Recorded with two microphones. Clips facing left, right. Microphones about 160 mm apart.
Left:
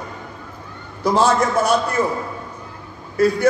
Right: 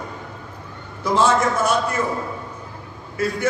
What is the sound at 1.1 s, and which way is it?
Speech, 35° left (ahead or behind).